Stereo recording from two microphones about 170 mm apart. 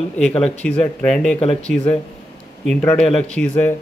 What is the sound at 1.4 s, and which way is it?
Speech, 35° left (ahead or behind).